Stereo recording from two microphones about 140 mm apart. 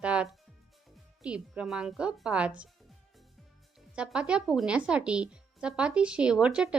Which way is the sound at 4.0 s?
5° right (ahead or behind).